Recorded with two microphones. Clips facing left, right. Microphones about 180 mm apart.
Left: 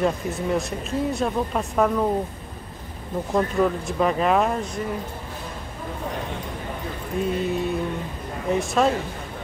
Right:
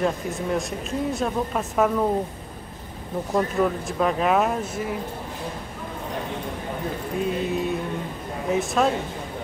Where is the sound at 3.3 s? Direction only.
Centre (ahead or behind).